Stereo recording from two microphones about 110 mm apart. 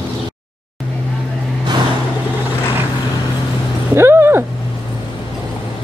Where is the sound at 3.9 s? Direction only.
25° right (ahead or behind).